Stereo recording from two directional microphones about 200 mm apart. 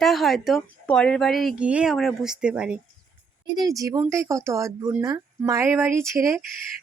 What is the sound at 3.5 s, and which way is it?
Speech, 15° right (ahead or behind).